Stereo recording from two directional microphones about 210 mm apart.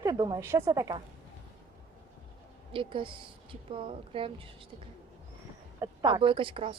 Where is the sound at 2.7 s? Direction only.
25° right (ahead or behind).